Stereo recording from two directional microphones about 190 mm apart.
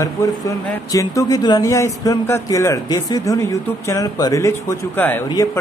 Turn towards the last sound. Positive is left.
turn(degrees=10)  # may be behind; listen again after turning